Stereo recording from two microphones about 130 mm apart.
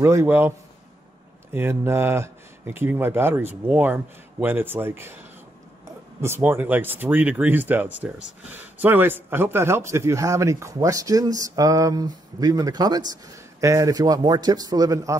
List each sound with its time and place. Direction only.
0.0 s speech: 20° right (ahead or behind)
6.2 s speech: 20° right (ahead or behind)